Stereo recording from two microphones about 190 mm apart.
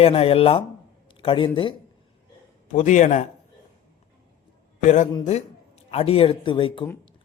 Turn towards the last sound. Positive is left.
turn(degrees=25)  # may be behind; listen again after turning